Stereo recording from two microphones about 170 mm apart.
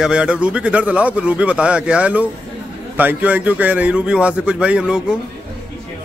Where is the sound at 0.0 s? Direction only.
5° right (ahead or behind).